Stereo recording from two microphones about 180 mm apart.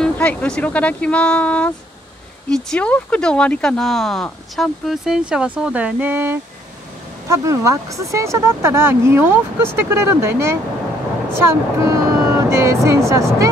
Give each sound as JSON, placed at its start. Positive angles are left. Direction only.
{"t": 0.0, "sound": "speech", "side_deg": 5}